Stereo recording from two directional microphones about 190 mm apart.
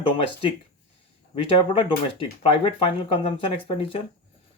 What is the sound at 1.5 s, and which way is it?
Speech, 30° left (ahead or behind).